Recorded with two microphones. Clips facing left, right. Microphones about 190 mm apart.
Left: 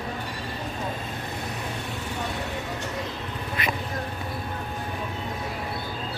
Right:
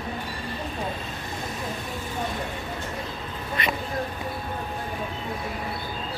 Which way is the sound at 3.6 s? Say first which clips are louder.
Right 1 dB; 5° left (ahead or behind).